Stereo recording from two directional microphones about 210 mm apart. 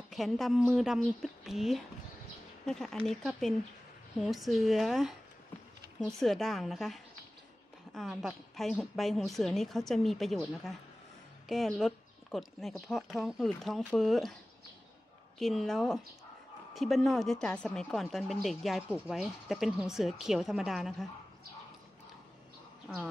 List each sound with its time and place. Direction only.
0.1 s speech: centre (ahead or behind)
6.1 s speech: centre (ahead or behind)
15.3 s speech: centre (ahead or behind)